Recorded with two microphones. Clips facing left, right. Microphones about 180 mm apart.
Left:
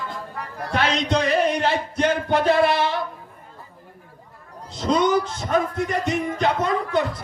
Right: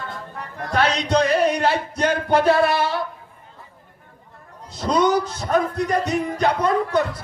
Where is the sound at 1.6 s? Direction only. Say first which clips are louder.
Right 1 dB; 40° right (ahead or behind).